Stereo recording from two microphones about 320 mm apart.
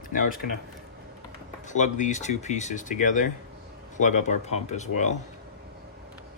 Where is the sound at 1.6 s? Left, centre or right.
Left.